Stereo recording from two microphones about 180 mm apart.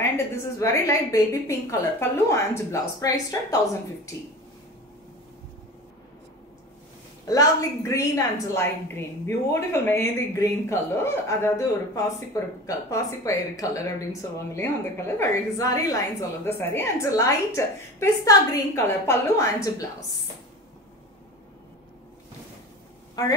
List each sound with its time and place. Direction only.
0.0 s a woman's voice: 15° left (ahead or behind)
7.2 s a woman's voice: 20° left (ahead or behind)
23.2 s speech: 20° left (ahead or behind)